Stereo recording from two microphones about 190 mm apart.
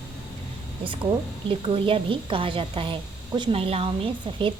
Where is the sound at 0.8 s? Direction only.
25° right (ahead or behind).